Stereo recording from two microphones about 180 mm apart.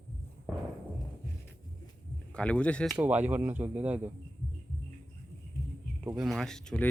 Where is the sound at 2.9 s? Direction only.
10° right (ahead or behind).